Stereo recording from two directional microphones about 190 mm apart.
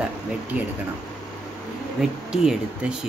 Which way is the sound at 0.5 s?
10° right (ahead or behind).